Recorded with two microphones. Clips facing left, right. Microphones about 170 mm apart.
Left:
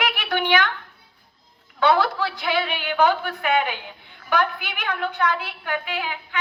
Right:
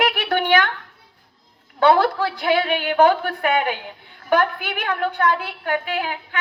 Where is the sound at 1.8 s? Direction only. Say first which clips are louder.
Right 3 dB; 50° right (ahead or behind).